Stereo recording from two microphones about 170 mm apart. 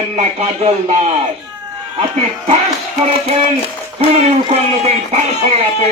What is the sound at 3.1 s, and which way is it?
Speech, 35° right (ahead or behind).